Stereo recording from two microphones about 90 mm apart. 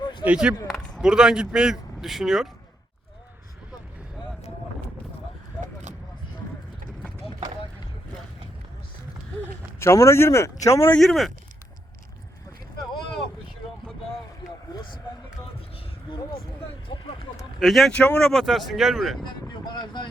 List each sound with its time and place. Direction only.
0.0 s a sound: 60° left (ahead or behind)
0.3 s speech: 10° right (ahead or behind)
0.7 s a sound: 10° left (ahead or behind)
1.0 s speech: 5° right (ahead or behind)
9.8 s speech: 30° left (ahead or behind)
11.0 s speech: centre (ahead or behind)
16.9 s vehicle: 65° left (ahead or behind)
17.6 s speech: centre (ahead or behind)
17.9 s speech: 15° left (ahead or behind)
18.3 s speech: centre (ahead or behind)
19.5 s a sound: 55° left (ahead or behind)